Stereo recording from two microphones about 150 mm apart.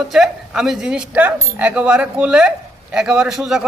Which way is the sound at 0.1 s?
Centre (ahead or behind).